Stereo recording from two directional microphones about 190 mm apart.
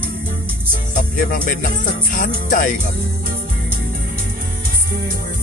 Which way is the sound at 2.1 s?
45° left (ahead or behind).